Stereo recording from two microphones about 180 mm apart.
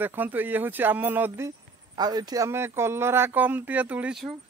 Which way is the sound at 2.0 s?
20° right (ahead or behind).